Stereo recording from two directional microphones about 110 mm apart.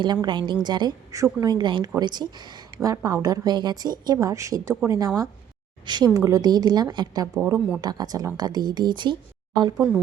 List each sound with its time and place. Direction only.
0.0 s a woman's voice: 45° right (ahead or behind)
7.3 s speech: 20° right (ahead or behind)
7.8 s a woman's voice: 35° right (ahead or behind)